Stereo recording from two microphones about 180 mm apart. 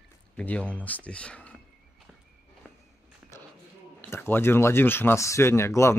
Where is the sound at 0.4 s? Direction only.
5° left (ahead or behind).